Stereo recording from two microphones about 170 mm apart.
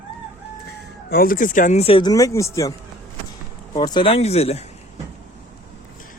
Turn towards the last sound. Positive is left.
turn(degrees=40)  # may be behind; listen again after turning